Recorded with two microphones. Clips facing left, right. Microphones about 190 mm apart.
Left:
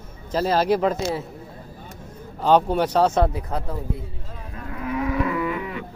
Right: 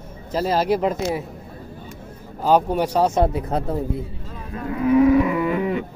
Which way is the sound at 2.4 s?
10° right (ahead or behind).